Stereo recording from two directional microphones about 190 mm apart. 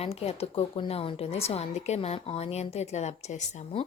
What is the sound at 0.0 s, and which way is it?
A woman's voice, 30° left (ahead or behind).